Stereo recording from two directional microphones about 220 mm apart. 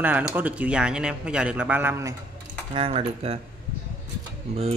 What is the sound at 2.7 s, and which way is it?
Speech, 25° right (ahead or behind).